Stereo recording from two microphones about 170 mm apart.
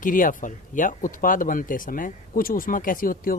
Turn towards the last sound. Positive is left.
turn(degrees=55)  # may be behind; listen again after turning